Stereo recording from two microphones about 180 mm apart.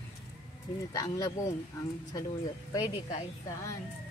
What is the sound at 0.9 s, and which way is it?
Speech, 20° left (ahead or behind).